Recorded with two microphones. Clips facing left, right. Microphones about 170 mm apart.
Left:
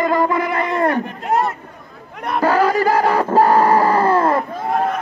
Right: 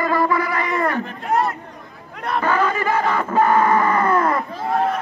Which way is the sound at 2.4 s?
35° left (ahead or behind).